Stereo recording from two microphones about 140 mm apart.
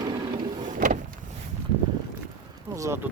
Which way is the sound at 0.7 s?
70° right (ahead or behind).